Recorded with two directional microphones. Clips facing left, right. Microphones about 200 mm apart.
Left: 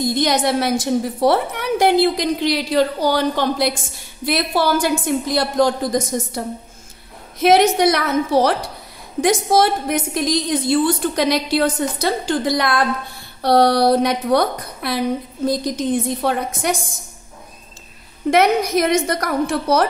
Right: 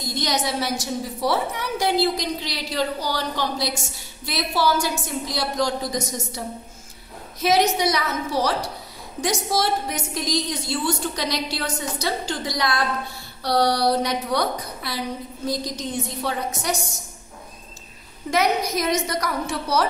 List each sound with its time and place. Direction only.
0.0 s a woman's voice: 55° left (ahead or behind)
7.4 s a woman's voice: 55° left (ahead or behind)
18.3 s a woman's voice: 60° left (ahead or behind)